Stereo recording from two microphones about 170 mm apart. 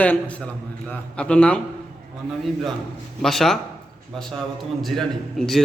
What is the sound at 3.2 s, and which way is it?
Speech, centre (ahead or behind).